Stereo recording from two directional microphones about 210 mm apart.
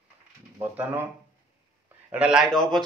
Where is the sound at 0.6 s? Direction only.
10° right (ahead or behind).